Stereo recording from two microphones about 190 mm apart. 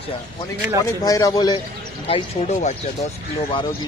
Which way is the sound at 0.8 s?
20° left (ahead or behind).